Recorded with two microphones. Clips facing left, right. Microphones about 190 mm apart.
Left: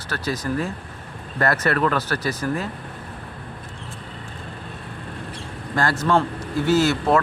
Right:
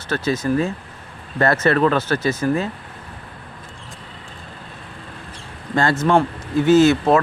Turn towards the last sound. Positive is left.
turn(degrees=-20)  # may be behind; listen again after turning